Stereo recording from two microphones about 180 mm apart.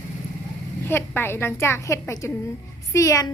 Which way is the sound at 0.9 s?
10° left (ahead or behind).